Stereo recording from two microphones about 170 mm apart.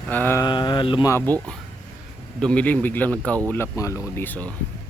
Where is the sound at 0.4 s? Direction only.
25° left (ahead or behind).